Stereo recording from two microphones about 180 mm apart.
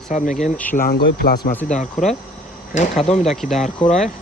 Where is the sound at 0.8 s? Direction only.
60° left (ahead or behind).